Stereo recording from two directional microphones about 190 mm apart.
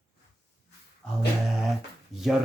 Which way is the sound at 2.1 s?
Centre (ahead or behind).